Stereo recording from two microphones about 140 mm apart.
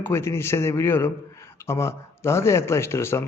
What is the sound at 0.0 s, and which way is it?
A man's voice, 20° left (ahead or behind).